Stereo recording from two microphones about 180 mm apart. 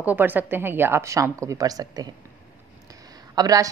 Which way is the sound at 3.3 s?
20° right (ahead or behind).